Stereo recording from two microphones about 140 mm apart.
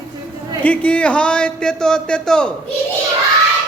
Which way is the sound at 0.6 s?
10° left (ahead or behind).